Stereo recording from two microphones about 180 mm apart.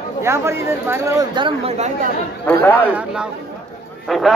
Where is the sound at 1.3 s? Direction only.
30° right (ahead or behind).